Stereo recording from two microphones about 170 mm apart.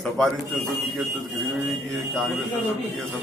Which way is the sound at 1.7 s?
Centre (ahead or behind).